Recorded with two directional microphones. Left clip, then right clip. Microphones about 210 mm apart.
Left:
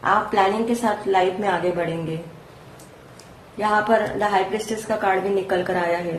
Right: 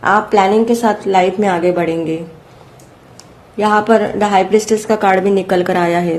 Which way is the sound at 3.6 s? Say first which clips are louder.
Right 7 dB; 50° right (ahead or behind).